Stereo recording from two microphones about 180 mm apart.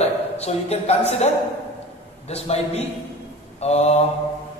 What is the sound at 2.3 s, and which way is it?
A man's voice, 35° left (ahead or behind).